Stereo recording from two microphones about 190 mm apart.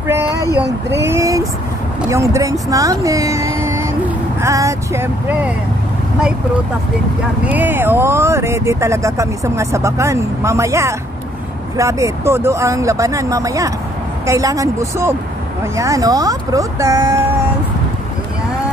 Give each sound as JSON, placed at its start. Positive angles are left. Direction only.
{"t": 0.6, "sound": "speech", "side_deg": -15}
{"t": 7.4, "sound": "speech", "side_deg": -10}